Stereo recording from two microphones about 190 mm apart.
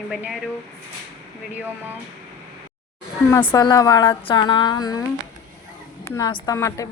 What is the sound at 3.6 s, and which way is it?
A woman's voice, 20° left (ahead or behind).